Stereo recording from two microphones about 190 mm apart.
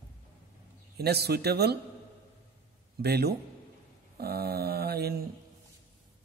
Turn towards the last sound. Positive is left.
turn(degrees=-55)  # may be behind; listen again after turning